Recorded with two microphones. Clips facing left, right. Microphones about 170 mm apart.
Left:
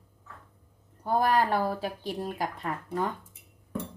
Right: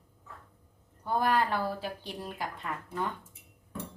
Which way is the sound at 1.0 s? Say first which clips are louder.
Left 3 dB; 40° left (ahead or behind).